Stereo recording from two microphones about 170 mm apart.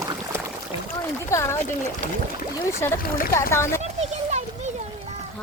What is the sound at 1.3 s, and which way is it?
Speech, 15° left (ahead or behind).